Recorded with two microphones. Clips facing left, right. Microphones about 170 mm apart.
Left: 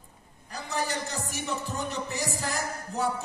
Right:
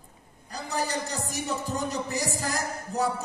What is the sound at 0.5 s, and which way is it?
Speech, 35° right (ahead or behind).